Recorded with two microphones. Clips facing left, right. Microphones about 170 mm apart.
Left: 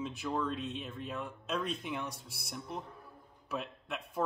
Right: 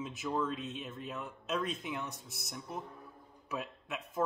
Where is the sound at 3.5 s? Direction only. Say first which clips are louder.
Left 1 dB; 5° right (ahead or behind).